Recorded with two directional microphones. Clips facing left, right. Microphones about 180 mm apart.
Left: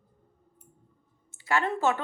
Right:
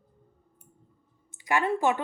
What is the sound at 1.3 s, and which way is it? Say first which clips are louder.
Speech: right 2 dB; 15° right (ahead or behind).